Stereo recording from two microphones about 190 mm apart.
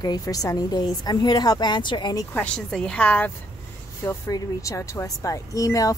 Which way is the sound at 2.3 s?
5° left (ahead or behind).